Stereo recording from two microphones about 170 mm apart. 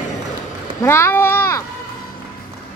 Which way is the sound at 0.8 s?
15° left (ahead or behind).